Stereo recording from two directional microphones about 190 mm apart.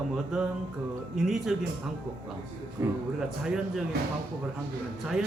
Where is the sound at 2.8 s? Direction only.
15° right (ahead or behind).